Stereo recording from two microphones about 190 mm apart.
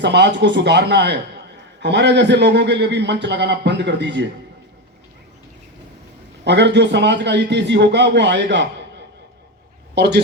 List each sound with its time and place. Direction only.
0.0 s a man's voice: 65° right (ahead or behind)
6.4 s a man's voice: 65° right (ahead or behind)
9.9 s a man's voice: 60° right (ahead or behind)